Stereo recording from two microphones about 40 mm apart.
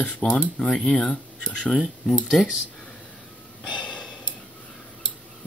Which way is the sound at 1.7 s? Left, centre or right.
Centre.